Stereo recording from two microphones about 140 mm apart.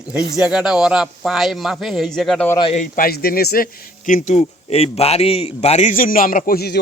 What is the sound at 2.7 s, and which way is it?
A man's voice, 75° left (ahead or behind).